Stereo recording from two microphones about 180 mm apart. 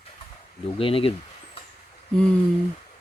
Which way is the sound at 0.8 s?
30° left (ahead or behind).